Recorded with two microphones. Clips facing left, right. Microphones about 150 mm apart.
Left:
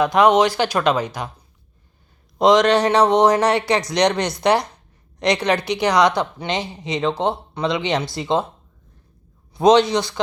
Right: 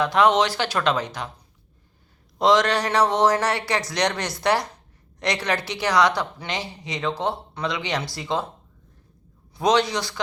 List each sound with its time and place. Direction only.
0.0 s speech: 15° left (ahead or behind)
2.4 s speech: 20° left (ahead or behind)
9.6 s speech: 25° left (ahead or behind)